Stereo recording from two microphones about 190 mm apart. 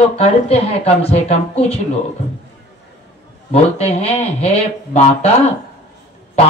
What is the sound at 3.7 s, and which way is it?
Speech, 35° left (ahead or behind).